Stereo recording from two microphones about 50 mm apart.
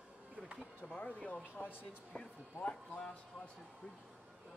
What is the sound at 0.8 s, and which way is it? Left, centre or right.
Speech, left.